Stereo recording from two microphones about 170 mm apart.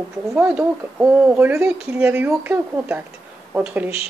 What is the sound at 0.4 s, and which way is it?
Speech, 10° right (ahead or behind).